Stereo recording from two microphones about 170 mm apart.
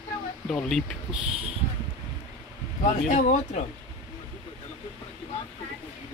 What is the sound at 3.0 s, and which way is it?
Speech, 50° left (ahead or behind).